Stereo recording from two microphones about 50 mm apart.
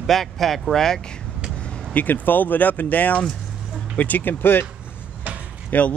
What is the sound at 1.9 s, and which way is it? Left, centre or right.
Speech, left.